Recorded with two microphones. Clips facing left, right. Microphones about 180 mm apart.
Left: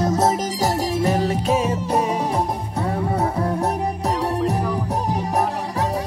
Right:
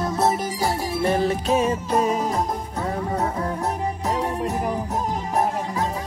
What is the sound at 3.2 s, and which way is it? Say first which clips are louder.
Music: left 3 dB; 35° left (ahead or behind).